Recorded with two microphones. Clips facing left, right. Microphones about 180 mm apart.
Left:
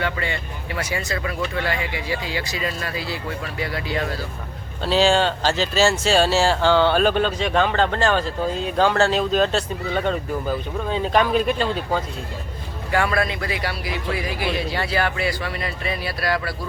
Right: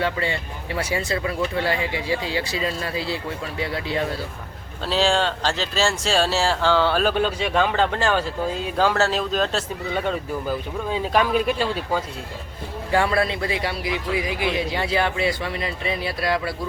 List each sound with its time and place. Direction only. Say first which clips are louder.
0.0 s a man's voice: right 2 dB; 30° right (ahead or behind)
4.8 s speech: left 3 dB; centre (ahead or behind)
12.9 s a man's voice: right 1 dB; 30° right (ahead or behind)